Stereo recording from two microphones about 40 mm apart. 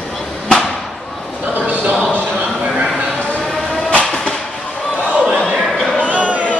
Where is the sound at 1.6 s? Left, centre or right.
Right.